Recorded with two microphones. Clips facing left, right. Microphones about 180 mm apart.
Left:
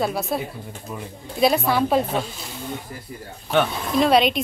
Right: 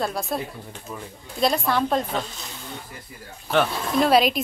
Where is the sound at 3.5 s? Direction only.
Centre (ahead or behind).